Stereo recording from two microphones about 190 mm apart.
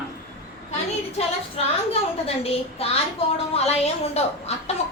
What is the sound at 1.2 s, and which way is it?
A woman's voice, 35° left (ahead or behind).